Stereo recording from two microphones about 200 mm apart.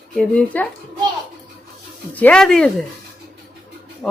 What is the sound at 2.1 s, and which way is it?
Speech, 5° left (ahead or behind).